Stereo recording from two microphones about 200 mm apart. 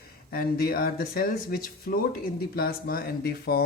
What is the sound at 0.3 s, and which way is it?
Speech, 50° left (ahead or behind).